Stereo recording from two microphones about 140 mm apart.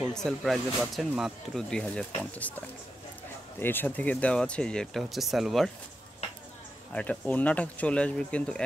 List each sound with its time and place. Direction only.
0.0 s speech: 5° left (ahead or behind)
6.9 s speech: 10° left (ahead or behind)